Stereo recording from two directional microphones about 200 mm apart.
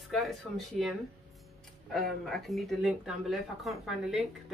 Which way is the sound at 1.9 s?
Centre (ahead or behind).